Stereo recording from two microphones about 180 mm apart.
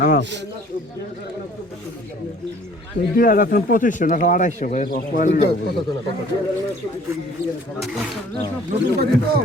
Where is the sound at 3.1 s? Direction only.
50° left (ahead or behind).